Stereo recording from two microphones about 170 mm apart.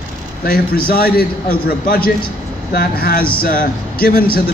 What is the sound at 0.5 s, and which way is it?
A man's voice, 60° left (ahead or behind).